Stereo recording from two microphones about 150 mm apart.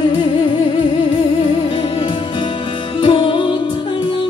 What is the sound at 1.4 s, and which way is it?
Music, 35° left (ahead or behind).